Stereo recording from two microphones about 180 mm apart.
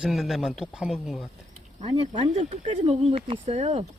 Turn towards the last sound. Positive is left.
turn(degrees=-35)  # may be behind; listen again after turning